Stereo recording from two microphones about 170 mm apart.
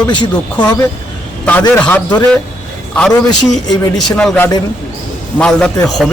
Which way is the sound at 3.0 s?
Centre (ahead or behind).